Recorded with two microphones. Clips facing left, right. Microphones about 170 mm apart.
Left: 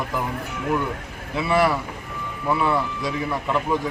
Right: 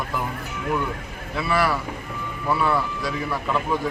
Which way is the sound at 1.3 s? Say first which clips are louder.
Left 3 dB; 20° left (ahead or behind).